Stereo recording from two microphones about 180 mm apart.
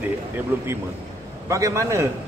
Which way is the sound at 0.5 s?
10° right (ahead or behind).